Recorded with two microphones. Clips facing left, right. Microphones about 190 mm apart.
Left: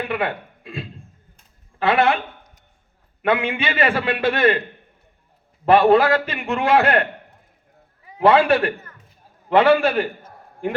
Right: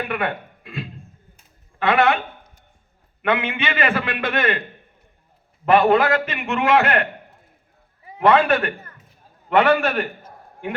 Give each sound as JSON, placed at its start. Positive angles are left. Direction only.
{"t": 0.1, "sound": "a man's voice", "side_deg": 30}
{"t": 3.2, "sound": "a man's voice", "side_deg": 35}
{"t": 5.6, "sound": "a man's voice", "side_deg": 35}
{"t": 8.2, "sound": "a man's voice", "side_deg": 30}